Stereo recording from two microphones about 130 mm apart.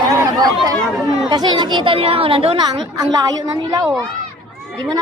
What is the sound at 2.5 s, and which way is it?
Speech, 30° right (ahead or behind).